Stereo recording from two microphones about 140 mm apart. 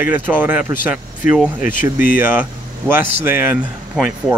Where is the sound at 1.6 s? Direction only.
70° left (ahead or behind).